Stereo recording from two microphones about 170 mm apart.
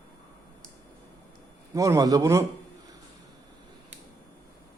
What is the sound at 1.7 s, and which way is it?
Speech, 20° right (ahead or behind).